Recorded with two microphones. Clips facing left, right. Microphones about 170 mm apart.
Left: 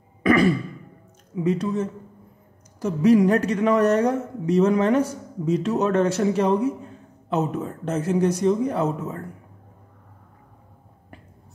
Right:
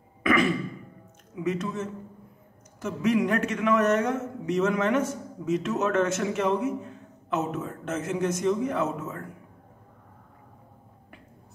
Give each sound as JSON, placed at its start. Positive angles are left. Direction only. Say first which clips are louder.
{"t": 0.2, "sound": "sigh", "louder": "left 5 dB", "side_deg": 35}
{"t": 1.3, "sound": "a man's voice", "louder": "left 6 dB", "side_deg": 30}